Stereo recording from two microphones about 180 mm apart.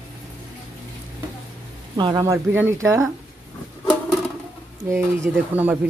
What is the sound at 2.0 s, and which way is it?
Speech, 25° right (ahead or behind).